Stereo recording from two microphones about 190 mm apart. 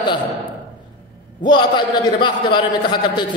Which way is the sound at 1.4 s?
25° left (ahead or behind).